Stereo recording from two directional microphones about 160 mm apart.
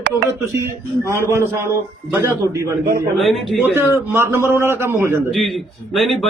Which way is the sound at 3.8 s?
15° right (ahead or behind).